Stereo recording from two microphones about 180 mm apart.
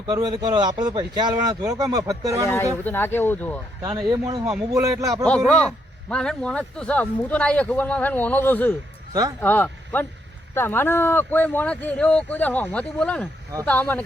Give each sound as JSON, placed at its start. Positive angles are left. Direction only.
{"t": 0.1, "sound": "speech", "side_deg": -20}
{"t": 2.8, "sound": "a man's voice", "side_deg": 10}
{"t": 3.8, "sound": "speech", "side_deg": -25}
{"t": 5.2, "sound": "a man's voice", "side_deg": 5}